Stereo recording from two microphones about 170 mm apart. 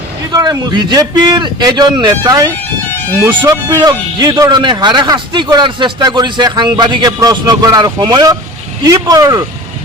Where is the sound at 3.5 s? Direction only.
25° right (ahead or behind).